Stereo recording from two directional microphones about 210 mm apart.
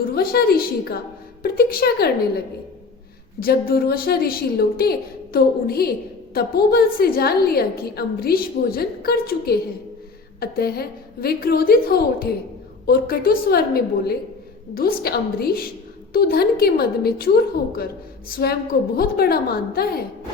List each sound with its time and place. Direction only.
0.0 s a woman's voice: 45° left (ahead or behind)
3.4 s a woman's voice: 45° left (ahead or behind)